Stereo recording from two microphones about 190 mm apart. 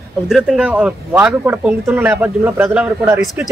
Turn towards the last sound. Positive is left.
turn(degrees=-10)  # may be behind; listen again after turning